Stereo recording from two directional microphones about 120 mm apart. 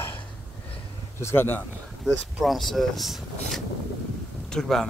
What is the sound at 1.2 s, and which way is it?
Speech, 20° left (ahead or behind).